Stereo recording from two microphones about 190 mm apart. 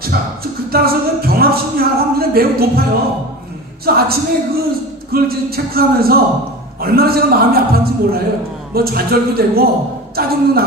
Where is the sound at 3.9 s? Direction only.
55° right (ahead or behind).